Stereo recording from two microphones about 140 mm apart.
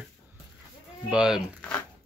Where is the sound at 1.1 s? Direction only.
5° right (ahead or behind).